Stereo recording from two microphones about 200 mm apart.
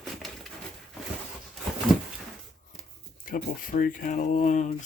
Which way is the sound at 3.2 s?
45° left (ahead or behind).